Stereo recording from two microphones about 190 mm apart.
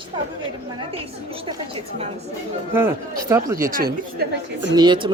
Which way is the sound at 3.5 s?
15° right (ahead or behind).